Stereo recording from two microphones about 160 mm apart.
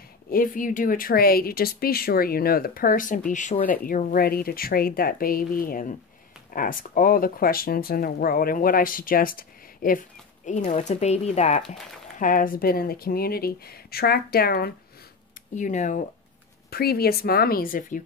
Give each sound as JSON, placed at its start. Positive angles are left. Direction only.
{"t": 0.3, "sound": "speech", "side_deg": 60}
{"t": 3.6, "sound": "speech", "side_deg": 60}
{"t": 10.4, "sound": "speech", "side_deg": 45}
{"t": 15.5, "sound": "speech", "side_deg": 50}
{"t": 16.7, "sound": "speech", "side_deg": 75}